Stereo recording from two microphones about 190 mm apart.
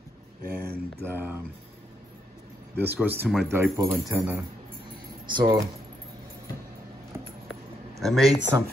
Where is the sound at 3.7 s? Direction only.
20° right (ahead or behind).